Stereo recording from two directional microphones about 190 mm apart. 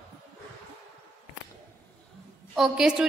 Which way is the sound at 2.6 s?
5° right (ahead or behind).